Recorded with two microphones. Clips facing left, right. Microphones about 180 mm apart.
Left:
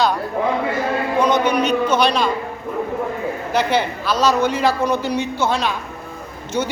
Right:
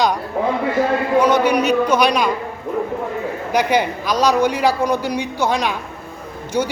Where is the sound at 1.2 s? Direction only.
10° right (ahead or behind).